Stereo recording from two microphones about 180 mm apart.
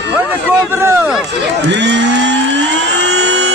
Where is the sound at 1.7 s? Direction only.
75° right (ahead or behind).